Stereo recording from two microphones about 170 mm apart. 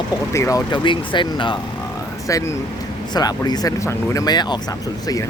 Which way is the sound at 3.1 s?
25° left (ahead or behind).